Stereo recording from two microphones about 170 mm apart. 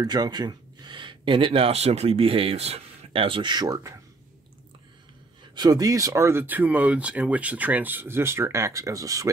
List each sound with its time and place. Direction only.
0.0 s speech: 25° right (ahead or behind)
5.5 s speech: 25° right (ahead or behind)